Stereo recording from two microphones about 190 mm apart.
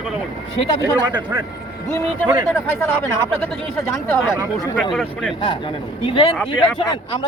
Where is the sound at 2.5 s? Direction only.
10° left (ahead or behind).